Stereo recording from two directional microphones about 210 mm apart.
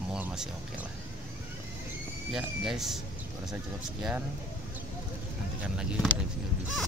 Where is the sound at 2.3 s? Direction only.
Centre (ahead or behind).